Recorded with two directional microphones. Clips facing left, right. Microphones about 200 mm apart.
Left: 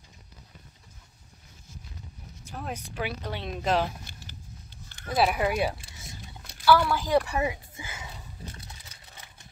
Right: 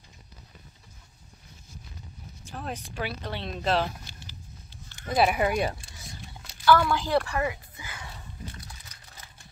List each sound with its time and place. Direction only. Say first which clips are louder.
2.5 s speech: even; 10° left (ahead or behind)
5.0 s speech: right 1 dB; centre (ahead or behind); by 8.1 s 25° left (ahead or behind)
8.5 s a sound: right 1 dB; 25° left (ahead or behind)